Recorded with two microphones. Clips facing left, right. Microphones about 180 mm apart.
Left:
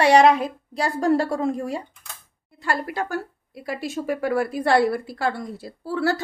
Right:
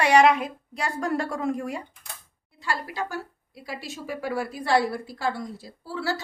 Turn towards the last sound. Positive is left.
turn(degrees=55)  # may be behind; listen again after turning